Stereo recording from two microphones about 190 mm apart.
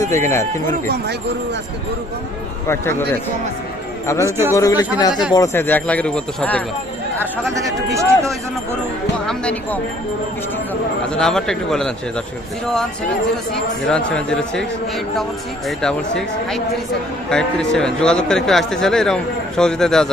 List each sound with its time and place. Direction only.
0.0 s speech: 15° left (ahead or behind)
2.6 s speech: 15° left (ahead or behind)
4.3 s speech: 10° right (ahead or behind)
4.5 s speech: 15° left (ahead or behind)
7.5 s speech: 15° right (ahead or behind)
9.2 s speech: 5° left (ahead or behind)
11.1 s a man's voice: 5° left (ahead or behind)
13.3 s a man's voice: 5° left (ahead or behind)